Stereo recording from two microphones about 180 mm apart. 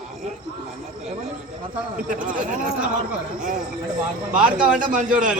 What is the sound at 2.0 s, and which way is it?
Speech, 45° right (ahead or behind).